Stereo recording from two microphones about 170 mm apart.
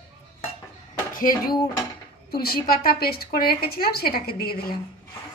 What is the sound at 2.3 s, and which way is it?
A woman's voice, 65° left (ahead or behind).